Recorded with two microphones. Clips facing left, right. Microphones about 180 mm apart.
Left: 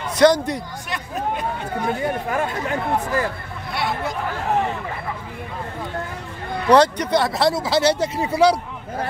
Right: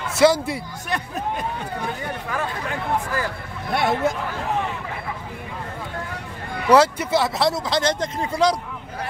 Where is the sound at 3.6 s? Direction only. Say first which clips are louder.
Right 5 dB; 50° right (ahead or behind).